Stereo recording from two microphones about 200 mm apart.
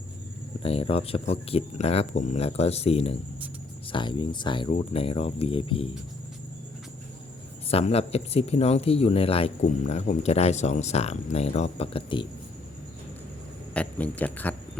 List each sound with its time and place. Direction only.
0.6 s speech: 30° left (ahead or behind)
7.7 s speech: 30° left (ahead or behind)
13.7 s speech: 5° left (ahead or behind)